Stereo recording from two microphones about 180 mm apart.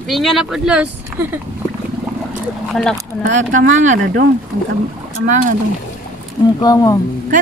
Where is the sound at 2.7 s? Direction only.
5° left (ahead or behind).